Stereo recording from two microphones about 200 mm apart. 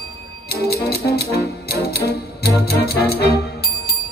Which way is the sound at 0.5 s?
50° left (ahead or behind).